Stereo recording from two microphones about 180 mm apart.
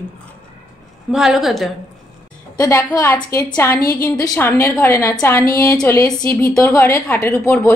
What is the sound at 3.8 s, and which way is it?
Speech, 55° left (ahead or behind).